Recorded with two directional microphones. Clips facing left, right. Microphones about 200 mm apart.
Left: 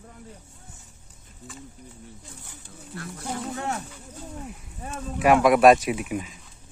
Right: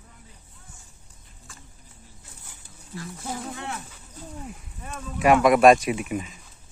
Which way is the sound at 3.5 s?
40° left (ahead or behind).